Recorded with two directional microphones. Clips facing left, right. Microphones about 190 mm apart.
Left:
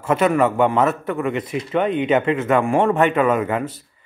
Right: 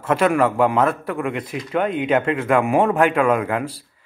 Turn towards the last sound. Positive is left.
turn(degrees=5)  # may be behind; listen again after turning